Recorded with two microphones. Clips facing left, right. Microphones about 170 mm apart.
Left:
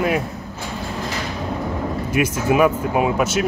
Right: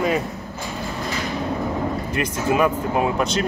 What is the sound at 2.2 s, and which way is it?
Speech, 10° left (ahead or behind).